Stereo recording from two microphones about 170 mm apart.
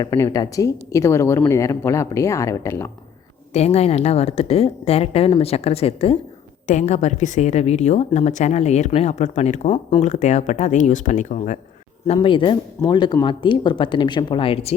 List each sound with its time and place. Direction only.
0.0 s speech: 20° left (ahead or behind)
3.5 s a woman's voice: 40° left (ahead or behind)
12.0 s speech: 30° left (ahead or behind)